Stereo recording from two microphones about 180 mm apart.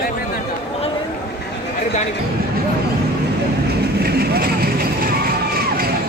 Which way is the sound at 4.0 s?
60° right (ahead or behind).